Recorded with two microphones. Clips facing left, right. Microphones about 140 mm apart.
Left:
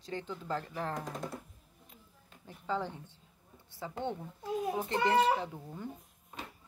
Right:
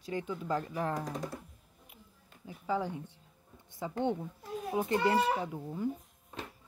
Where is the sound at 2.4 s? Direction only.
10° right (ahead or behind).